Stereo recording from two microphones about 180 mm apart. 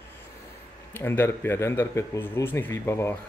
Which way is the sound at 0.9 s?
10° left (ahead or behind).